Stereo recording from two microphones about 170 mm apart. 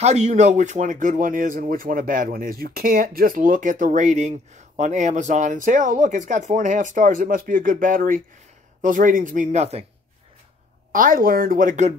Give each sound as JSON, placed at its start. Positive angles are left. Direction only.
{"t": 0.0, "sound": "speech", "side_deg": -40}
{"t": 10.9, "sound": "speech", "side_deg": -50}